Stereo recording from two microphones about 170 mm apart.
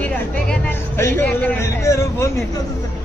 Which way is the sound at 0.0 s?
10° left (ahead or behind).